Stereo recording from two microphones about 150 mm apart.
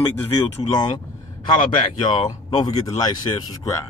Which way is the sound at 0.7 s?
30° left (ahead or behind).